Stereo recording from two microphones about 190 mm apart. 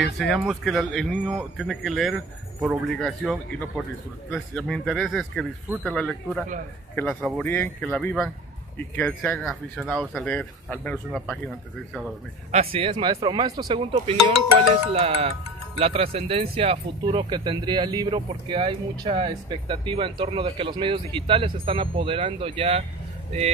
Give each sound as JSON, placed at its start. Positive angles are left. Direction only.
{"t": 0.0, "sound": "speech", "side_deg": 0}
{"t": 12.4, "sound": "speech", "side_deg": -30}
{"t": 14.9, "sound": "speech", "side_deg": -30}